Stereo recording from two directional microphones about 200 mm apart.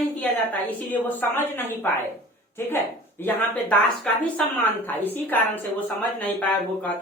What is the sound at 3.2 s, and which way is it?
A woman's voice, 5° left (ahead or behind).